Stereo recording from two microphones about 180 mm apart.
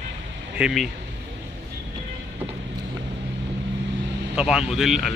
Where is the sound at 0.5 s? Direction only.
5° right (ahead or behind).